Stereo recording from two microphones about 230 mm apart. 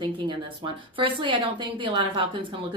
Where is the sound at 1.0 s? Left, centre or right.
Right.